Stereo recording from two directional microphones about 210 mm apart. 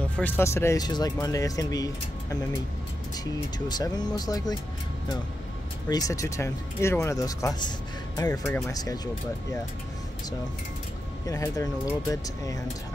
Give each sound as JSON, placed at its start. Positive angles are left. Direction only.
{"t": 0.2, "sound": "speech", "side_deg": 15}
{"t": 3.3, "sound": "speech", "side_deg": 20}
{"t": 5.9, "sound": "speech", "side_deg": 15}
{"t": 11.2, "sound": "speech", "side_deg": 15}